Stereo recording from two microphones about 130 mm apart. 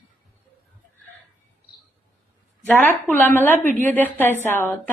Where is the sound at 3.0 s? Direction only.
15° left (ahead or behind).